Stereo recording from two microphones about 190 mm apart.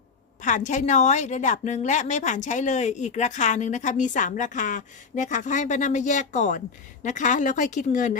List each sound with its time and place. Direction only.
0.4 s a woman's voice: 40° left (ahead or behind)